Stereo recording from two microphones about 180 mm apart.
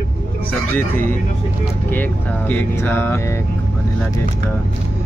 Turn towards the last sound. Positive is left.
turn(degrees=10)  # may be behind; listen again after turning